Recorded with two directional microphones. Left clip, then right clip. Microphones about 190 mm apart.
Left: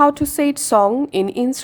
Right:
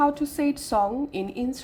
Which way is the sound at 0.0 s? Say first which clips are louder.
Left 8 dB; 35° left (ahead or behind).